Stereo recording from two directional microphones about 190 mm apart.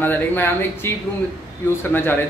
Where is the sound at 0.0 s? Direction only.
10° left (ahead or behind).